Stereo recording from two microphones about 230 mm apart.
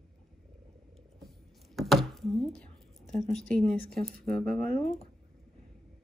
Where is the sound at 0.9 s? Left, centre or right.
Centre.